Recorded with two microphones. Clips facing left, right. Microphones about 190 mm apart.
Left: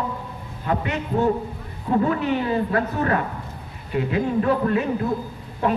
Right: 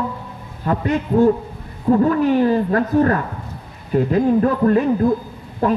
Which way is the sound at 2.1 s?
40° right (ahead or behind).